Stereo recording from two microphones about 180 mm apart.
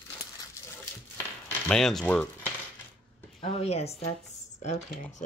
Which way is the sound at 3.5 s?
35° left (ahead or behind).